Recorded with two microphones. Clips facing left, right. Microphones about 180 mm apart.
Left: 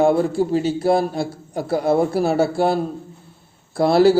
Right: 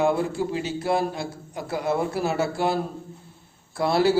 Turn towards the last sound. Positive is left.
turn(degrees=35)  # may be behind; listen again after turning